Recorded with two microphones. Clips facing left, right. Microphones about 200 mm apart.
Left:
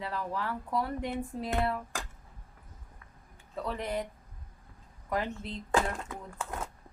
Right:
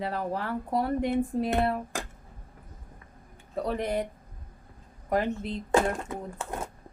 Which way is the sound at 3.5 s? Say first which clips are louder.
Right 6 dB; 40° right (ahead or behind).